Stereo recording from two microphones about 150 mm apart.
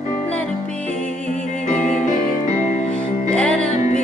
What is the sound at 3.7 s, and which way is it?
Music, 50° left (ahead or behind).